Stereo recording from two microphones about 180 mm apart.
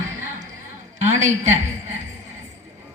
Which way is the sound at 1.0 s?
40° right (ahead or behind).